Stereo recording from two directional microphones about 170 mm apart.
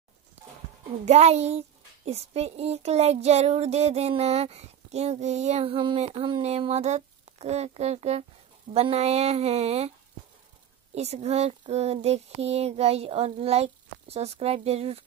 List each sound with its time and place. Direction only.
1.0 s child singing: 40° right (ahead or behind)
11.0 s child singing: 40° right (ahead or behind)